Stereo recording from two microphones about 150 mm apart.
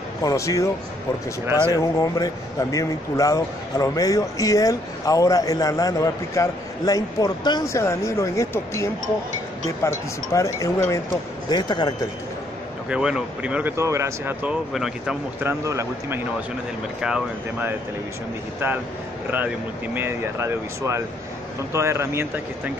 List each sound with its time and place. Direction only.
0.2 s a man's voice: 25° left (ahead or behind)
1.4 s speech: 15° right (ahead or behind)
1.7 s a man's voice: 25° left (ahead or behind)
12.9 s speech: 5° right (ahead or behind)
15.4 s speech: 20° right (ahead or behind)
17.0 s speech: 5° right (ahead or behind)
19.3 s speech: 10° right (ahead or behind)